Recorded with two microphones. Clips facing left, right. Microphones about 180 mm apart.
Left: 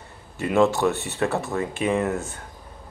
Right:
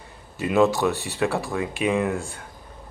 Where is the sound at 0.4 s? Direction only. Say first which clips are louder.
Even; 15° right (ahead or behind).